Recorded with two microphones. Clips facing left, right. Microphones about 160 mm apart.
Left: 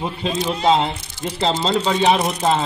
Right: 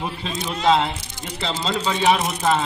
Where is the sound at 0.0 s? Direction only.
25° left (ahead or behind).